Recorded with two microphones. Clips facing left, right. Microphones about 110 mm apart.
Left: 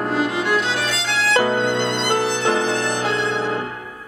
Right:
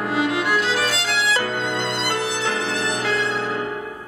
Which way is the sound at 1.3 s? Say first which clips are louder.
Left 6 dB; 30° left (ahead or behind).